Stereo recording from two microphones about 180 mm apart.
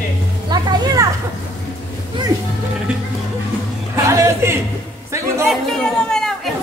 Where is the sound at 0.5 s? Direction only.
20° right (ahead or behind).